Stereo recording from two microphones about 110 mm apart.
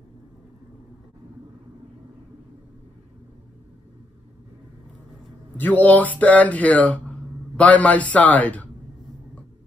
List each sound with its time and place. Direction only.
5.6 s speech: 15° left (ahead or behind)